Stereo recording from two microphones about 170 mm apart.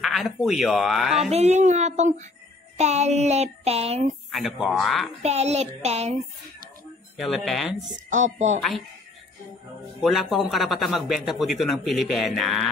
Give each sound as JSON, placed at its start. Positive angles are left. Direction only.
{"t": 0.0, "sound": "a man's voice", "side_deg": 0}
{"t": 1.3, "sound": "a sound", "side_deg": -40}
{"t": 4.3, "sound": "a man's voice", "side_deg": 0}
{"t": 5.2, "sound": "a sound", "side_deg": -40}
{"t": 7.2, "sound": "a man's voice", "side_deg": 0}
{"t": 8.1, "sound": "speech", "side_deg": -45}
{"t": 8.5, "sound": "a man's voice", "side_deg": 0}
{"t": 10.0, "sound": "a man's voice", "side_deg": 0}